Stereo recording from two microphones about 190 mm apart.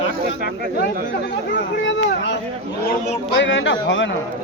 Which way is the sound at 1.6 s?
70° left (ahead or behind).